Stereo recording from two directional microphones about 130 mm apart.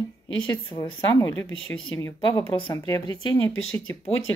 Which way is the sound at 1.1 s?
15° left (ahead or behind).